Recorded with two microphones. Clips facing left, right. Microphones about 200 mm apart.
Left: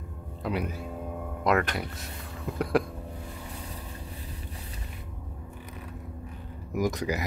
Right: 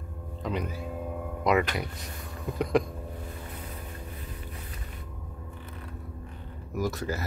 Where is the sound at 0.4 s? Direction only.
5° left (ahead or behind).